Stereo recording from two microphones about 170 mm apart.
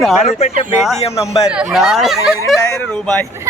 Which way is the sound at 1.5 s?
5° right (ahead or behind).